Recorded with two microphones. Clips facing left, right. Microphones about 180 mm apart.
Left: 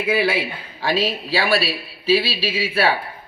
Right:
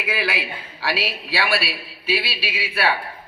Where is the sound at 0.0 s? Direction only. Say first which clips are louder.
Left 6 dB; 25° left (ahead or behind).